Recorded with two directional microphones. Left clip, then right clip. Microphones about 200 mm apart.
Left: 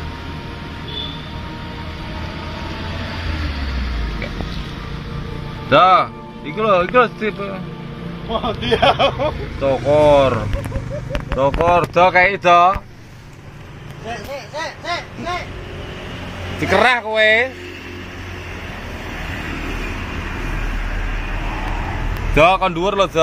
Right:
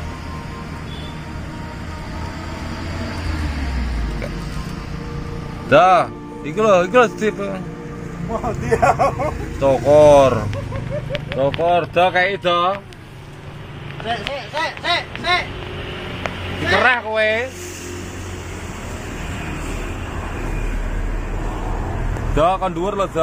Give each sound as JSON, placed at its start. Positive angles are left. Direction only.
{"t": 5.7, "sound": "speech", "side_deg": -5}
{"t": 11.1, "sound": "a sound", "side_deg": 25}
{"t": 11.5, "sound": "speech", "side_deg": 15}
{"t": 14.3, "sound": "speech", "side_deg": -10}
{"t": 16.8, "sound": "speech", "side_deg": 50}
{"t": 22.3, "sound": "speech", "side_deg": 25}